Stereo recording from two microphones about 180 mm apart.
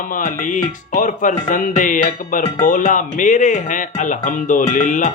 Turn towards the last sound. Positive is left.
turn(degrees=45)  # may be behind; listen again after turning